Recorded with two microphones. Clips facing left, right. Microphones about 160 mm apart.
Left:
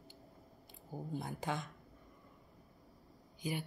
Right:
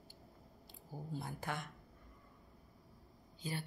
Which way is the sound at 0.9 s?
20° left (ahead or behind).